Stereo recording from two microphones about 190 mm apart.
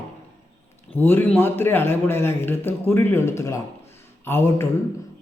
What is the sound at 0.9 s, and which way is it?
Mantra, 10° left (ahead or behind).